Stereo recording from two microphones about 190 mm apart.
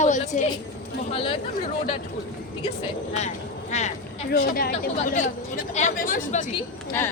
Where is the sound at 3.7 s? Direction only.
35° left (ahead or behind).